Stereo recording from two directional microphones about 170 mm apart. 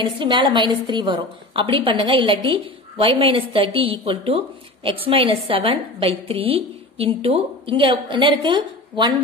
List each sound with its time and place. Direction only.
0.0 s a woman's voice: 30° right (ahead or behind)